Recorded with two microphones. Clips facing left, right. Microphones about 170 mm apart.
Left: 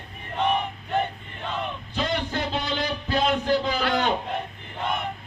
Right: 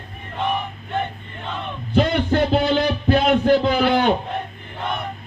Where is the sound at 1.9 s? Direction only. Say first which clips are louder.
Right 10 dB; 55° right (ahead or behind).